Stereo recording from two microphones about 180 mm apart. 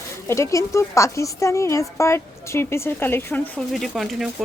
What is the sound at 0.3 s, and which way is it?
A woman's voice, 15° left (ahead or behind).